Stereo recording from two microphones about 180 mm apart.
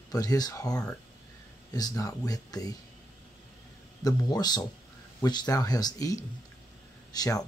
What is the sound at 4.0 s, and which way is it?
Speech, 20° left (ahead or behind).